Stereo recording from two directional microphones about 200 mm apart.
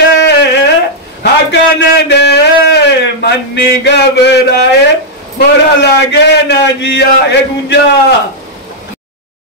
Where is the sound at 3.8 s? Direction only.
60° left (ahead or behind).